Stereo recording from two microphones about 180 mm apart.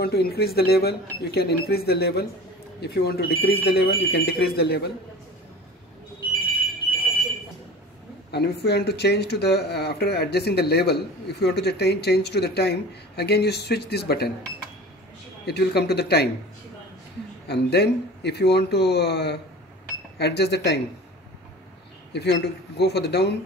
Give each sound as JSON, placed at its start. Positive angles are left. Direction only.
{"t": 0.0, "sound": "speech", "side_deg": 60}
{"t": 8.3, "sound": "speech", "side_deg": 65}
{"t": 15.4, "sound": "speech", "side_deg": 65}
{"t": 17.5, "sound": "speech", "side_deg": 65}
{"t": 22.1, "sound": "speech", "side_deg": 70}